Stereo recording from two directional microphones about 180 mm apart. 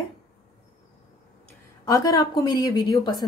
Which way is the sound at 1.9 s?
20° left (ahead or behind).